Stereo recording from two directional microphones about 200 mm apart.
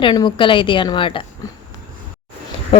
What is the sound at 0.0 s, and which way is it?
Speech, 25° left (ahead or behind).